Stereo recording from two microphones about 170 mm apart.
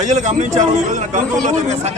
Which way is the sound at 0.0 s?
45° right (ahead or behind).